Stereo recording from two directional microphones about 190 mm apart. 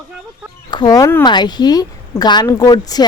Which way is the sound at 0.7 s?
20° left (ahead or behind).